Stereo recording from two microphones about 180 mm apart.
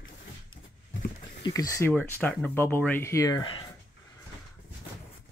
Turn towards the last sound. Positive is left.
turn(degrees=25)  # may be behind; listen again after turning